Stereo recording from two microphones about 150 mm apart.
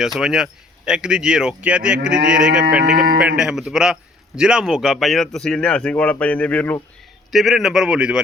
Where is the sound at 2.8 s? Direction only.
90° right.